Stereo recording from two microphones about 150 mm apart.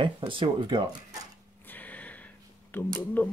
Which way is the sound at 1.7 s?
10° left (ahead or behind).